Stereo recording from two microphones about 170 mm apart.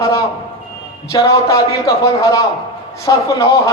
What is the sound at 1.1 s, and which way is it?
A man's voice, 20° left (ahead or behind).